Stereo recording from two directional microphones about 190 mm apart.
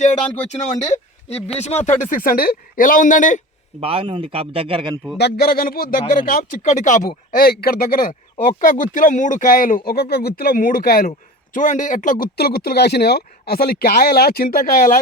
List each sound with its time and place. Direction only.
0.0 s speech: 40° left (ahead or behind)
3.8 s a man's voice: 30° right (ahead or behind)
5.1 s speech: 60° left (ahead or behind); by 7.1 s 40° left (ahead or behind)
7.3 s speech: 50° left (ahead or behind)
12.2 s speech: 55° left (ahead or behind)